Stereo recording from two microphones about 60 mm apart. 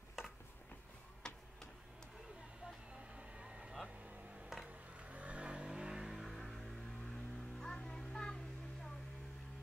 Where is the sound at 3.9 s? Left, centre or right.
Right.